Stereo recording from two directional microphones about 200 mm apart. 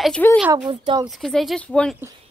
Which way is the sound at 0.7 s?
25° right (ahead or behind).